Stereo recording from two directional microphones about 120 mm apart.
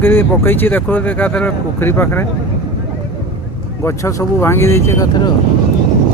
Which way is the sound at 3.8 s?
25° left (ahead or behind).